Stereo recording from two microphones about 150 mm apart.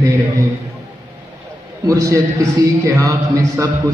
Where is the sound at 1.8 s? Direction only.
20° right (ahead or behind).